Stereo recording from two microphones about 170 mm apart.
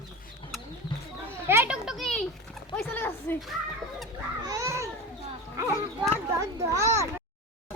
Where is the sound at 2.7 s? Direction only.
10° left (ahead or behind).